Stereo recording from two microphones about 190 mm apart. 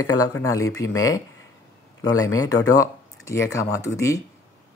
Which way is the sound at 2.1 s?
90° left.